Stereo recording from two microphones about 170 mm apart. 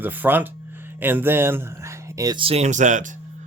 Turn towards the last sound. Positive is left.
turn(degrees=-45)  # may be behind; listen again after turning